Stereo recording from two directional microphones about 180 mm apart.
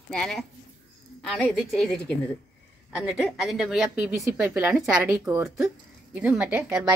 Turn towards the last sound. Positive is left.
turn(degrees=-5)  # may be behind; listen again after turning